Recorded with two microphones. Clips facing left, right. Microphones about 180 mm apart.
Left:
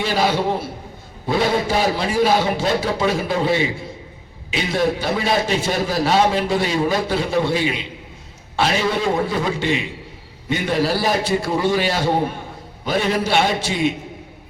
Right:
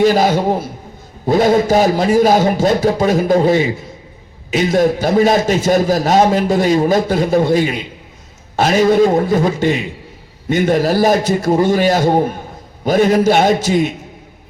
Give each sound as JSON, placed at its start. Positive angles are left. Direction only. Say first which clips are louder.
{"t": 0.0, "sound": "a man's voice", "louder": "right 7 dB", "side_deg": -45}